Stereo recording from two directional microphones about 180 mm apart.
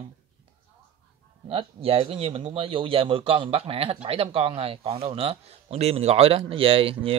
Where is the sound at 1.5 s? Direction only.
30° right (ahead or behind).